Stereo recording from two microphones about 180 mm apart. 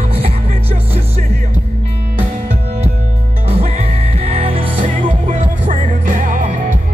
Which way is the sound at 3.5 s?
35° right (ahead or behind).